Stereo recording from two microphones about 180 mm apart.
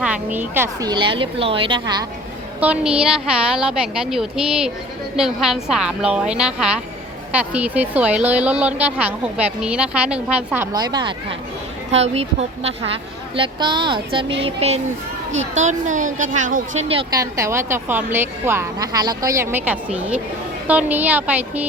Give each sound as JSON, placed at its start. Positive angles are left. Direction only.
{"t": 0.0, "sound": "a woman's voice", "side_deg": -10}
{"t": 2.6, "sound": "a woman's voice", "side_deg": -5}
{"t": 11.9, "sound": "a woman's voice", "side_deg": -35}
{"t": 17.2, "sound": "a woman's voice", "side_deg": -15}